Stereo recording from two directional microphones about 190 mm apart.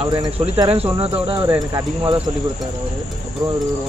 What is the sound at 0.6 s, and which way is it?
Speech, 30° right (ahead or behind).